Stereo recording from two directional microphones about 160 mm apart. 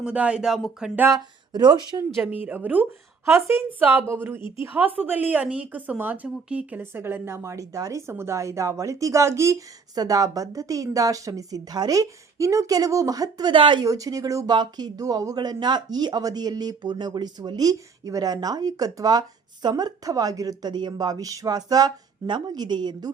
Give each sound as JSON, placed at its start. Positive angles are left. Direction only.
{"t": 0.0, "sound": "speech", "side_deg": -5}
{"t": 0.9, "sound": "a woman's voice", "side_deg": -15}
{"t": 1.5, "sound": "a woman's voice", "side_deg": -30}
{"t": 2.4, "sound": "a woman's voice", "side_deg": -10}
{"t": 4.4, "sound": "speech", "side_deg": 30}
{"t": 4.6, "sound": "a woman's voice", "side_deg": -10}